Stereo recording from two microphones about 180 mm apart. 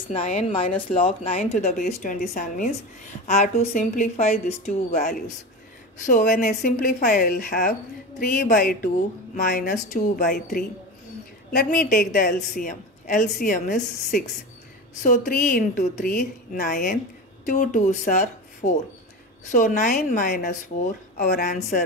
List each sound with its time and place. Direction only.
0.1 s speech: 35° left (ahead or behind); by 2.7 s 50° left (ahead or behind)
3.3 s speech: 40° left (ahead or behind)